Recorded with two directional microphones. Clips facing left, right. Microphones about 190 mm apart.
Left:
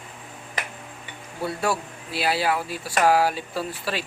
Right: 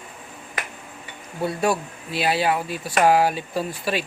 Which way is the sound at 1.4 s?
20° right (ahead or behind).